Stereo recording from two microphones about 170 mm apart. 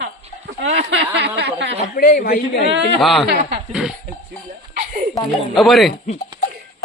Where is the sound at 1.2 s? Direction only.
80° right.